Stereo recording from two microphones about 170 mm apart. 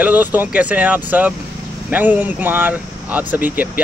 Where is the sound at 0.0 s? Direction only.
10° right (ahead or behind).